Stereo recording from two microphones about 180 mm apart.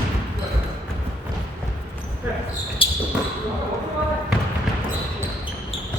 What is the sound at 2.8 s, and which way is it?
Basketball bounce, 30° left (ahead or behind).